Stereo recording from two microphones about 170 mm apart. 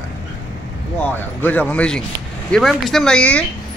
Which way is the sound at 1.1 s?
10° left (ahead or behind).